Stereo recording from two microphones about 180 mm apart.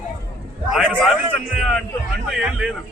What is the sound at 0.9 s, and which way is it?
Speech, 5° left (ahead or behind).